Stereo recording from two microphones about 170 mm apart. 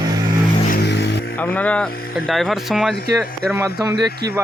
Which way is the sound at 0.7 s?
75° left (ahead or behind).